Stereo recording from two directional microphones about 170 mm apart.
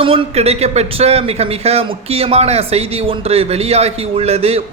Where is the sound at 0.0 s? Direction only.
35° right (ahead or behind).